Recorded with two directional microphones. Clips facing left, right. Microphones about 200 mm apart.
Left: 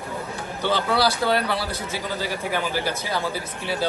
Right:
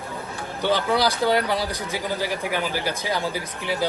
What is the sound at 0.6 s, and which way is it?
A man's voice, 15° right (ahead or behind).